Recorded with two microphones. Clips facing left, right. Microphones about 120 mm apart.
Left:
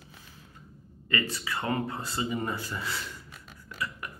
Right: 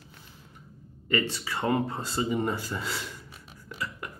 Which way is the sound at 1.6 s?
25° right (ahead or behind).